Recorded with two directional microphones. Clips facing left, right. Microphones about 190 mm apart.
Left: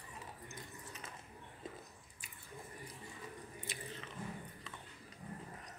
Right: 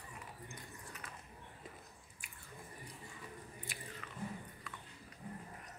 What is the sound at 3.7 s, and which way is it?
Biting, 20° left (ahead or behind).